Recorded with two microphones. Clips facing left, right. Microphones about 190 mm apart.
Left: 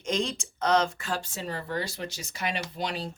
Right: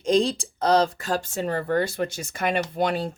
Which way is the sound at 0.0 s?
35° right (ahead or behind).